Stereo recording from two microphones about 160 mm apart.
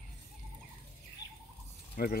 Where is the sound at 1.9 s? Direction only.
75° left (ahead or behind).